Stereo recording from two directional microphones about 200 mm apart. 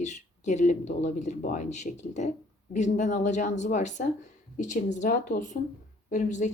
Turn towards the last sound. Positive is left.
turn(degrees=40)  # may be behind; listen again after turning